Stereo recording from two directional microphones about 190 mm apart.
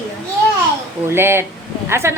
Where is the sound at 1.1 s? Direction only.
10° right (ahead or behind).